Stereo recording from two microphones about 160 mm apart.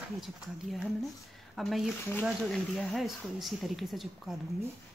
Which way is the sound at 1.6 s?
Centre (ahead or behind).